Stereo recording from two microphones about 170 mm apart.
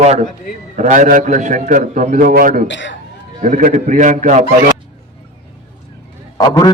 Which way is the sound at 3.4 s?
50° right (ahead or behind).